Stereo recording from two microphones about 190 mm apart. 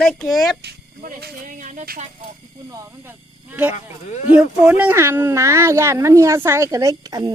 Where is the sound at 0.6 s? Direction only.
50° right (ahead or behind).